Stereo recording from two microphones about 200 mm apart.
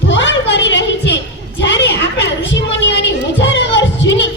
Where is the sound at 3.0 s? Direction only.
65° left (ahead or behind).